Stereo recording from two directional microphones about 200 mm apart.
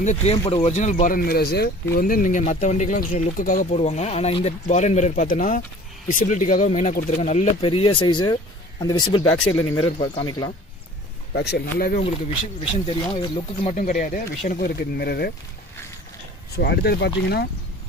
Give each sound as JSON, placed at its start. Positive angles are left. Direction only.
{"t": 0.0, "sound": "speech", "side_deg": 35}
{"t": 7.6, "sound": "speech", "side_deg": 25}
{"t": 11.3, "sound": "speech", "side_deg": 55}
{"t": 12.5, "sound": "speech", "side_deg": 25}
{"t": 13.7, "sound": "speech", "side_deg": 40}
{"t": 16.5, "sound": "speech", "side_deg": 55}